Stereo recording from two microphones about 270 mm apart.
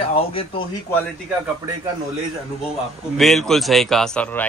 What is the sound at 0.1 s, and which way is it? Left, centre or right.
Speech, left.